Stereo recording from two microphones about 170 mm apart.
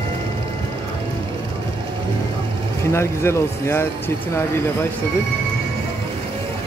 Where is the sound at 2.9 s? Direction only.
15° left (ahead or behind).